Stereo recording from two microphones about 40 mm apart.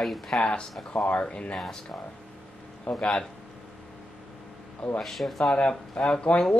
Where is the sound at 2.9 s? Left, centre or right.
Left.